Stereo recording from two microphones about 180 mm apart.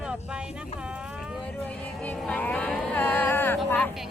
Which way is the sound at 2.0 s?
5° left (ahead or behind).